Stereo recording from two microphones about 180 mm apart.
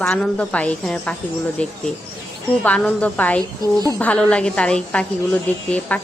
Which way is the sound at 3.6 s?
20° right (ahead or behind).